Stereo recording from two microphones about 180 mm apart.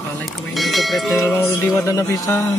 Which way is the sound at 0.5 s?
Centre (ahead or behind).